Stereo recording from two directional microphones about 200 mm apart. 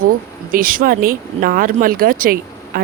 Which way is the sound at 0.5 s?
45° right (ahead or behind).